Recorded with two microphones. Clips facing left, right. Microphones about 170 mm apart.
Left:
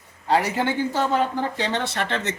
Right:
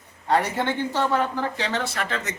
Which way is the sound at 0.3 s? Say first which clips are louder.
Left 1 dB; 10° left (ahead or behind).